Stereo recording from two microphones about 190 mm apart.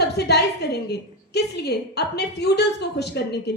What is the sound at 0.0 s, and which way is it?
A woman's voice, 60° left (ahead or behind).